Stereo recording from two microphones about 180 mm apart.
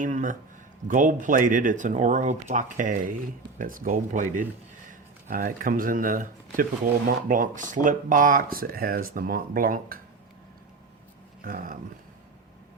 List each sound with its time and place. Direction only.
0.0 s speech: 45° right (ahead or behind)
11.4 s speech: 50° right (ahead or behind)